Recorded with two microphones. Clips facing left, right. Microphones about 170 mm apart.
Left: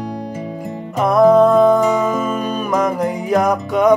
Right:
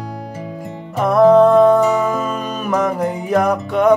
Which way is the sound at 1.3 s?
Centre (ahead or behind).